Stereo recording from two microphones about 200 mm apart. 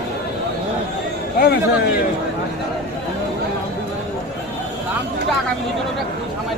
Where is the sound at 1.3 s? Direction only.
50° left (ahead or behind).